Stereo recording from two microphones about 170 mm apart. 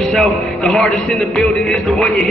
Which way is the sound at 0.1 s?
Centre (ahead or behind).